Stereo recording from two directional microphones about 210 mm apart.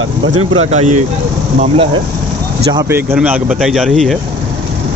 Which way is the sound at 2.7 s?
15° right (ahead or behind).